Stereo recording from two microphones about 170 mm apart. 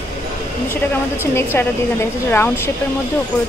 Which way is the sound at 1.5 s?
15° left (ahead or behind).